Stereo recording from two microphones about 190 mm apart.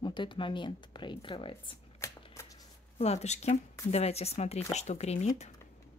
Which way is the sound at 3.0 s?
35° left (ahead or behind).